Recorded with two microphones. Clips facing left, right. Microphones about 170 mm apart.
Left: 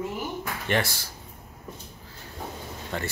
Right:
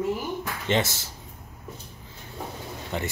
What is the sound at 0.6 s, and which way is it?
Speech, 20° right (ahead or behind).